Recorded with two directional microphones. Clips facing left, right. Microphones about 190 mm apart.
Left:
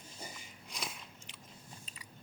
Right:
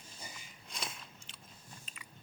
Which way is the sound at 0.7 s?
15° left (ahead or behind).